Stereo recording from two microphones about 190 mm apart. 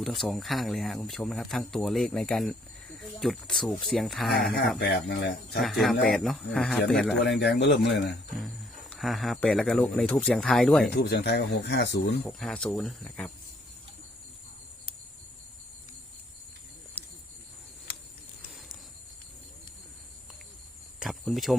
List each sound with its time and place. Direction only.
0.0 s speech: centre (ahead or behind)
5.5 s speech: centre (ahead or behind)
7.3 s speech: 60° left (ahead or behind)
8.4 s speech: centre (ahead or behind)
10.9 s speech: 60° left (ahead or behind)
12.2 s speech: centre (ahead or behind)
21.0 s cricket: centre (ahead or behind)